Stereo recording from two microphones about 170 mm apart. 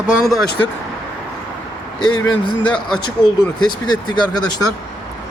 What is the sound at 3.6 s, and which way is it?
Speech, 25° left (ahead or behind).